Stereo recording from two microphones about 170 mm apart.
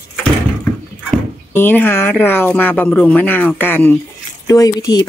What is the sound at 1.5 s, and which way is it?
Speech, 10° left (ahead or behind).